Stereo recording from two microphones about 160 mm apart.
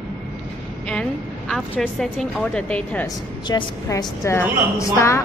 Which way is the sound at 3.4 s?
30° left (ahead or behind).